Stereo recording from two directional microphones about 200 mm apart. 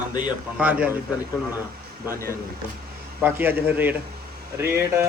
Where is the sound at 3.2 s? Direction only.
10° right (ahead or behind).